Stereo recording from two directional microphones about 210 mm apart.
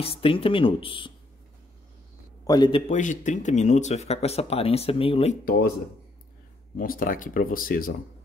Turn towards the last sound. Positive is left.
turn(degrees=45)  # may be behind; listen again after turning